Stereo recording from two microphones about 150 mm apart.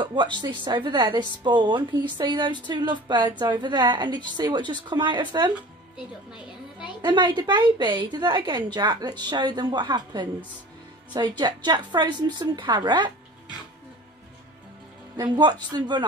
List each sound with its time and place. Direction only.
0.0 s speech: 30° right (ahead or behind)
7.0 s a woman's voice: 30° right (ahead or behind)
15.1 s a woman's voice: 30° right (ahead or behind)